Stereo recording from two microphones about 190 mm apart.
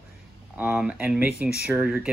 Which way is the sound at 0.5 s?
5° right (ahead or behind).